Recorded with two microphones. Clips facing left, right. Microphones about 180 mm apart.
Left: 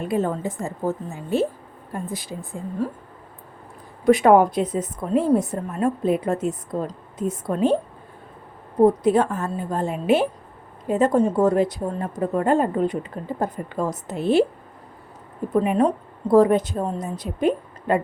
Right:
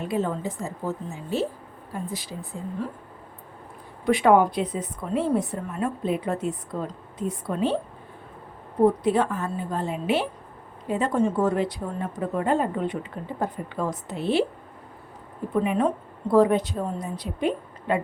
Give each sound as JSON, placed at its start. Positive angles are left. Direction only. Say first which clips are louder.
{"t": 0.1, "sound": "a woman's voice", "louder": "left 3 dB", "side_deg": 50}
{"t": 4.0, "sound": "a woman's voice", "louder": "left 4 dB", "side_deg": 45}
{"t": 9.0, "sound": "a woman's voice", "louder": "left 4 dB", "side_deg": 45}
{"t": 15.6, "sound": "a woman's voice", "louder": "left 3 dB", "side_deg": 40}